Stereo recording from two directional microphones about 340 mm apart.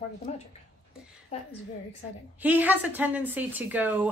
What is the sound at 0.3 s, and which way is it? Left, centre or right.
A woman's voice, centre.